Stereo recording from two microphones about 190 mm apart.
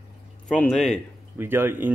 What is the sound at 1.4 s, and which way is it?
Speech, 10° right (ahead or behind).